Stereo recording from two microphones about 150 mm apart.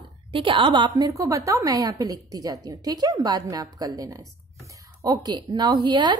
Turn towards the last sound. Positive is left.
turn(degrees=-30)  # may be behind; listen again after turning